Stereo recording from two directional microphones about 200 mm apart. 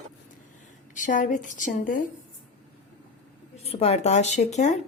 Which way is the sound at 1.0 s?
40° left (ahead or behind).